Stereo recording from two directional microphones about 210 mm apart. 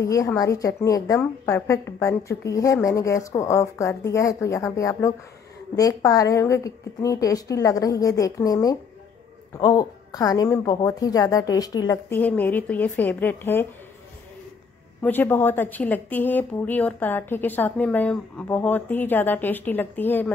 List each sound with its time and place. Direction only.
0.0 s a woman's voice: 15° left (ahead or behind)
15.0 s a woman's voice: 10° left (ahead or behind)